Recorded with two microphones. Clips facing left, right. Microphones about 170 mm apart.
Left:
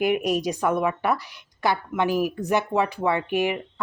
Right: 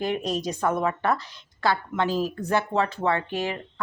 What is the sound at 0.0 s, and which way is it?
Speech, 15° left (ahead or behind).